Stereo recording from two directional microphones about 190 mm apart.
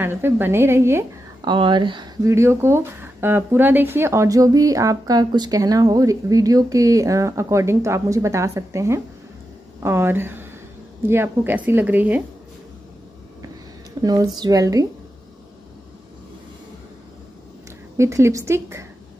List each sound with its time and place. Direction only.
0.0 s speech: 10° right (ahead or behind)
1.5 s speech: 25° right (ahead or behind); by 12.2 s 10° right (ahead or behind)
14.0 s a woman's voice: 20° right (ahead or behind)
17.9 s speech: 15° right (ahead or behind)